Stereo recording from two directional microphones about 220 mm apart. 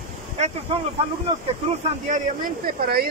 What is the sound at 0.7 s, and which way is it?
Speech, 25° right (ahead or behind).